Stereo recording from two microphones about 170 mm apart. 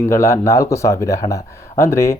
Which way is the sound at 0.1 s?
15° left (ahead or behind).